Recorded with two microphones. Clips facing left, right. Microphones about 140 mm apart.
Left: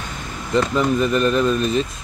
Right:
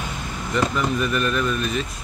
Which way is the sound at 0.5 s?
30° left (ahead or behind).